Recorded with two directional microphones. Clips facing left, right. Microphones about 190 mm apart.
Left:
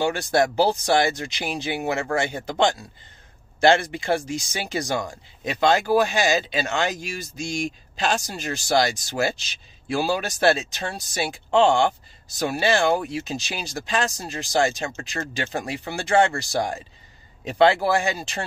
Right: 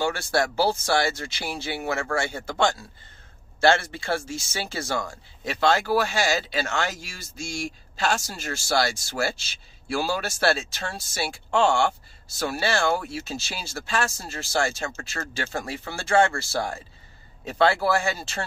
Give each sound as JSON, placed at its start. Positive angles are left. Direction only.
{"t": 0.0, "sound": "speech", "side_deg": 20}